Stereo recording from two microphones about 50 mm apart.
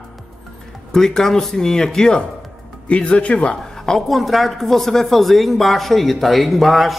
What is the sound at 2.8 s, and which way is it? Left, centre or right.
Speech, left.